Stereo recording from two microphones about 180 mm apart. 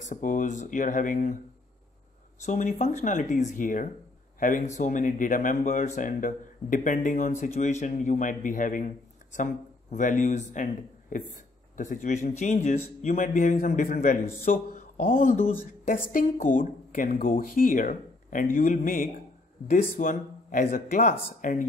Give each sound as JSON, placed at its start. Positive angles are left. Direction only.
{"t": 0.0, "sound": "speech", "side_deg": 45}
{"t": 2.4, "sound": "speech", "side_deg": 40}